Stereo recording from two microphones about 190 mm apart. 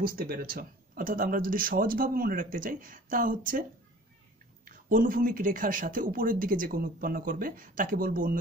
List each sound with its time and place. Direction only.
0.0 s speech: 50° right (ahead or behind)
4.6 s speech: 45° right (ahead or behind)